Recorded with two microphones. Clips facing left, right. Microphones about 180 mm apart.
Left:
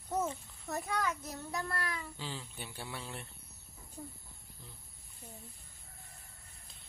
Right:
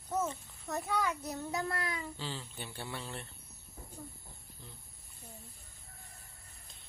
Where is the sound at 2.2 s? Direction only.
10° left (ahead or behind).